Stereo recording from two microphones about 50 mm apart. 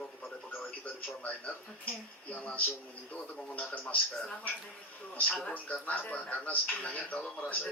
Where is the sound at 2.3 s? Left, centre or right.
Left.